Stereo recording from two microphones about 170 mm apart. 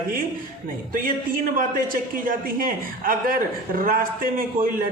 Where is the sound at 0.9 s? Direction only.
55° right (ahead or behind).